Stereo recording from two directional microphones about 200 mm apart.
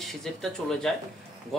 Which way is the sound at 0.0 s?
Centre (ahead or behind).